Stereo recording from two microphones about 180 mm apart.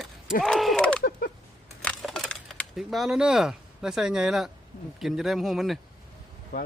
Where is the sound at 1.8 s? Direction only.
5° left (ahead or behind).